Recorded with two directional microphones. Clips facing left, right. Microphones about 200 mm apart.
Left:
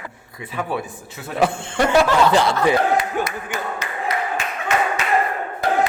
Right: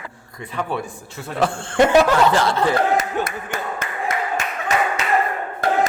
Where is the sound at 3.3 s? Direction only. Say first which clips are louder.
Even; 50° right (ahead or behind).